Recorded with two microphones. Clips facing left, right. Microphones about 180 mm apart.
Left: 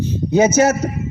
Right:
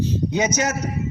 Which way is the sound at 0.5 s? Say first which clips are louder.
Left 9 dB; 30° left (ahead or behind).